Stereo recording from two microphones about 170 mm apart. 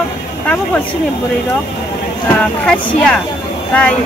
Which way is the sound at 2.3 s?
5° left (ahead or behind).